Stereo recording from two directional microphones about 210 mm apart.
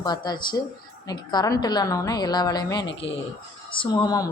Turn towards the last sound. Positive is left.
turn(degrees=15)  # may be behind; listen again after turning